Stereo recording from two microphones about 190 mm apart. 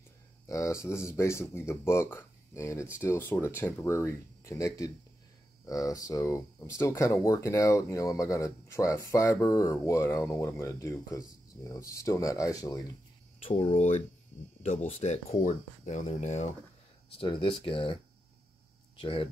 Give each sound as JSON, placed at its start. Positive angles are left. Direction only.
{"t": 0.5, "sound": "speech", "side_deg": 15}
{"t": 13.4, "sound": "speech", "side_deg": 30}
{"t": 17.2, "sound": "speech", "side_deg": 25}
{"t": 18.9, "sound": "speech", "side_deg": 25}